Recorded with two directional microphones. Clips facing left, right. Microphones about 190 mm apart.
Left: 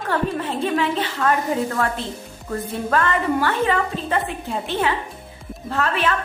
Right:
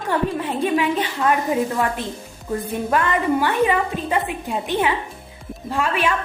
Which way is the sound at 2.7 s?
15° right (ahead or behind).